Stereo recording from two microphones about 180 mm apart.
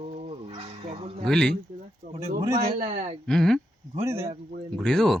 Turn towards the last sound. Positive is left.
turn(degrees=0)  # may be behind; listen again after turning